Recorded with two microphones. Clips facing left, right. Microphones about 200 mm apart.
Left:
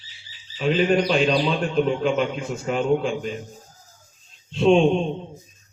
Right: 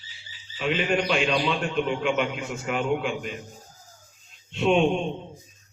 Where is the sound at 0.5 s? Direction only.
35° left (ahead or behind).